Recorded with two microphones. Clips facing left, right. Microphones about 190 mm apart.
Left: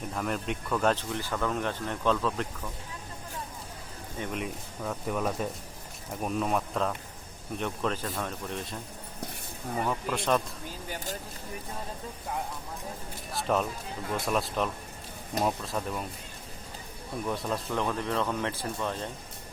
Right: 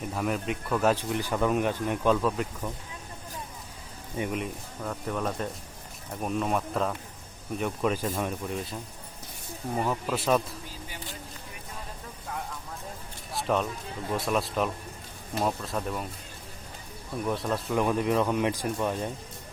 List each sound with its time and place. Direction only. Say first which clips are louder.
0.1 s speech: right 2 dB; 5° right (ahead or behind)
4.2 s speech: right 3 dB; centre (ahead or behind)
9.8 s speech: right 1 dB; 5° right (ahead or behind)
10.8 s a sound: left 9 dB; 45° left (ahead or behind)
13.3 s speech: right 1 dB; centre (ahead or behind)
17.2 s speech: right 3 dB; centre (ahead or behind)